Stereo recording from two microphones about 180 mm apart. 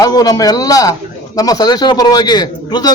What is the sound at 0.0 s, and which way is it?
A man's voice, 20° left (ahead or behind).